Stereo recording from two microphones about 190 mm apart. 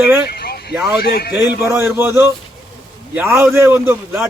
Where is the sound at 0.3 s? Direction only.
55° left (ahead or behind).